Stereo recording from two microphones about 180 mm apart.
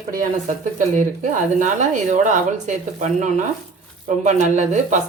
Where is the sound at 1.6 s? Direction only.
45° right (ahead or behind).